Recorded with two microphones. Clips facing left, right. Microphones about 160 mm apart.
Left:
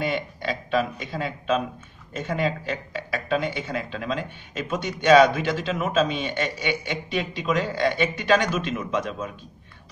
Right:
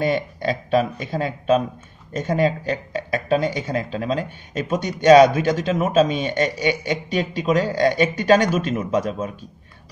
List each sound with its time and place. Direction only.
0.0 s speech: 40° right (ahead or behind)